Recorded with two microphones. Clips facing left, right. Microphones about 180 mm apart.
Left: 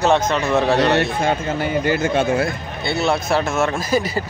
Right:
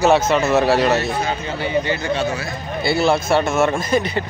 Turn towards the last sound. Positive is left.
turn(degrees=5)  # may be behind; listen again after turning